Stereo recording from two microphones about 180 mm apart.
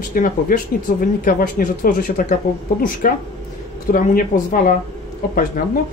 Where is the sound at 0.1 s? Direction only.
50° left (ahead or behind).